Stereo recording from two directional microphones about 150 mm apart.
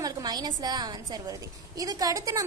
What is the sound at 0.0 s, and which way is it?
A woman's voice, 25° right (ahead or behind).